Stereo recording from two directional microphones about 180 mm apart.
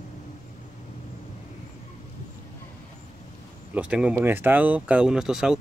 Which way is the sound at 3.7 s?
5° right (ahead or behind).